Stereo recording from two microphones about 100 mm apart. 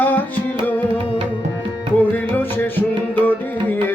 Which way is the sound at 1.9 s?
20° left (ahead or behind).